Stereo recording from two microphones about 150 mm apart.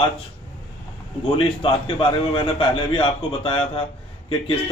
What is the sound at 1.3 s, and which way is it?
A man's voice, 35° left (ahead or behind).